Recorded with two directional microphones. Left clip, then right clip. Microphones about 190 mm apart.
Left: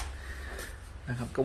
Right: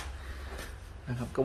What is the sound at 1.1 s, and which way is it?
Speech, centre (ahead or behind).